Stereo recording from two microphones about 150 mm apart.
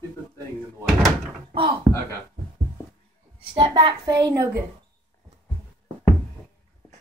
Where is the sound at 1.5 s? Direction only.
35° right (ahead or behind).